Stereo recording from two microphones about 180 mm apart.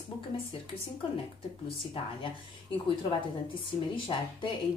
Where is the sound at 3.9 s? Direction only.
30° left (ahead or behind).